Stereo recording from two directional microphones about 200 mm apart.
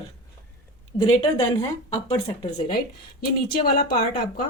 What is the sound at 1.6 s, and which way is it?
Speech, 15° left (ahead or behind).